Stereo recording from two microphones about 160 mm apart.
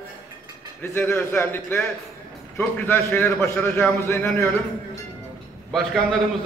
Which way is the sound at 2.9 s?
15° left (ahead or behind).